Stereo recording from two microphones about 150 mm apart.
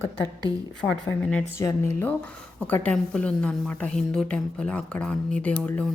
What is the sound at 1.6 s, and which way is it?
A woman's voice, 15° left (ahead or behind).